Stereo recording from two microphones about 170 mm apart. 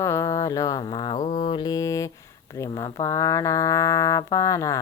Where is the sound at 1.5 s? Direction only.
25° left (ahead or behind).